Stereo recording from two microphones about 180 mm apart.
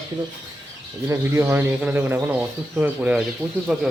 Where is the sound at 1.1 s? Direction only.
15° right (ahead or behind).